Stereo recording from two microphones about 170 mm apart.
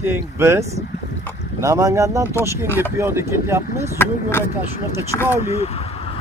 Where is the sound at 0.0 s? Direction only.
15° right (ahead or behind).